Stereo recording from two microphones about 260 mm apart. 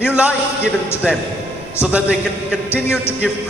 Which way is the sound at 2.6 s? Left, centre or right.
Centre.